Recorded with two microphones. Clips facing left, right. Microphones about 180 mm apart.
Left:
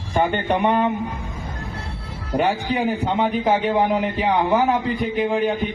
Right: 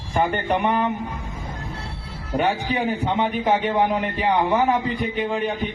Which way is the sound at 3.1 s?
Centre (ahead or behind).